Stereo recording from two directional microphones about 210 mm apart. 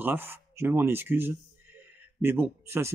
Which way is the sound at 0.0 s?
10° right (ahead or behind).